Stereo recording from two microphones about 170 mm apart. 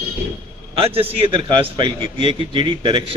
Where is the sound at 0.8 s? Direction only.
35° right (ahead or behind).